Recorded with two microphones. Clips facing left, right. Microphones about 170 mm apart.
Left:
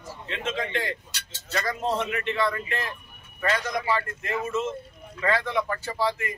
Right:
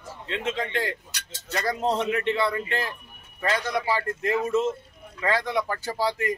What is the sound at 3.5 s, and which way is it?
A man's voice, 35° right (ahead or behind).